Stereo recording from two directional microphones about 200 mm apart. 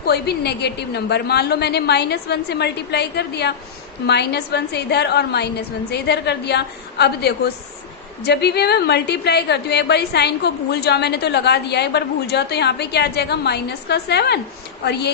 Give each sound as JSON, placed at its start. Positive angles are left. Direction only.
{"t": 0.0, "sound": "a woman's voice", "side_deg": 55}